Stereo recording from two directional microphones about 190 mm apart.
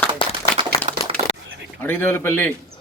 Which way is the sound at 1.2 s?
35° right (ahead or behind).